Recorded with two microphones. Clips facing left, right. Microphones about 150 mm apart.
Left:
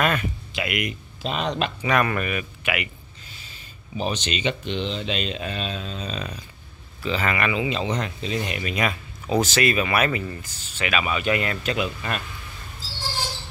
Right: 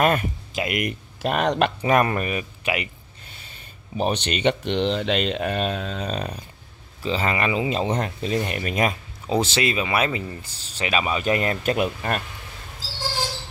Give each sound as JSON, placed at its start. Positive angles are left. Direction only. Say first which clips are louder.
{"t": 0.0, "sound": "speech", "louder": "right 3 dB", "side_deg": -40}
{"t": 1.2, "sound": "speech", "louder": "right 5 dB", "side_deg": -65}
{"t": 1.8, "sound": "speech", "louder": "right 3 dB", "side_deg": -35}
{"t": 4.0, "sound": "speech", "louder": "right 4 dB", "side_deg": -60}
{"t": 7.0, "sound": "speech", "louder": "right 1 dB", "side_deg": -30}
{"t": 9.3, "sound": "speech", "louder": "left 1 dB", "side_deg": -25}